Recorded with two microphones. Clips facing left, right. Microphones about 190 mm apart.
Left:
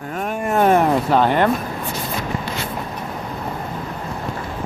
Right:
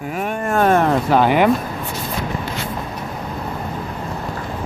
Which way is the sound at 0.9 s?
5° right (ahead or behind).